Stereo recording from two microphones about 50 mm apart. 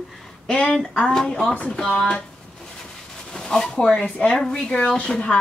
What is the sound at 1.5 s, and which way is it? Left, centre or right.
Speech, left.